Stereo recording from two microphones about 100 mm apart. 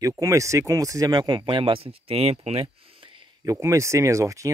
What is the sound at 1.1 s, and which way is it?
Speech, 45° right (ahead or behind).